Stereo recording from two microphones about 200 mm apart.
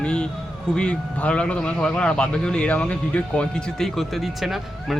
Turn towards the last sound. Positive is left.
turn(degrees=0)  # may be behind; listen again after turning